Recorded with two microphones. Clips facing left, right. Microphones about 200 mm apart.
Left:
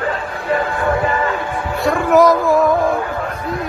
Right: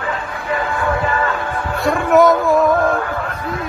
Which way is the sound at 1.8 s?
Centre (ahead or behind).